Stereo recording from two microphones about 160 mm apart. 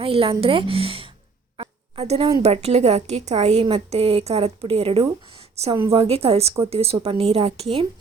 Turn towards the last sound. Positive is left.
turn(degrees=-35)  # may be behind; listen again after turning